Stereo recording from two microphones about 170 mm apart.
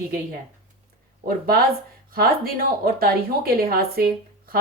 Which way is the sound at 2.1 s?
65° right (ahead or behind).